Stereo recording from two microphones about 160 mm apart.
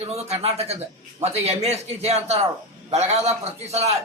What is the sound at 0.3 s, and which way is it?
A man's voice, 40° right (ahead or behind).